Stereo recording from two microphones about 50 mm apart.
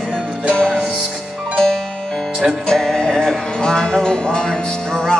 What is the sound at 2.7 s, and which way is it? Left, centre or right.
Music, centre.